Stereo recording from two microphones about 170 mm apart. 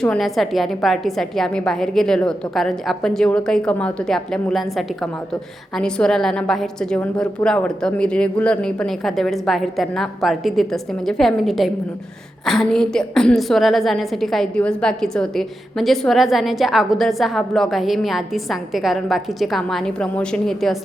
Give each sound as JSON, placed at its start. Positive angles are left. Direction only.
{"t": 0.0, "sound": "a woman's voice", "side_deg": 0}
{"t": 5.7, "sound": "a woman's voice", "side_deg": 5}